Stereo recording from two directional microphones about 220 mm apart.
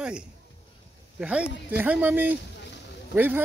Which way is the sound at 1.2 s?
5° right (ahead or behind).